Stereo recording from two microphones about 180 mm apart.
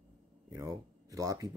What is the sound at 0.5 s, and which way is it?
Speech, 20° right (ahead or behind).